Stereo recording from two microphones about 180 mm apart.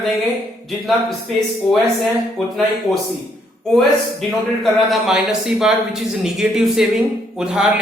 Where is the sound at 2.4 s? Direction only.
Centre (ahead or behind).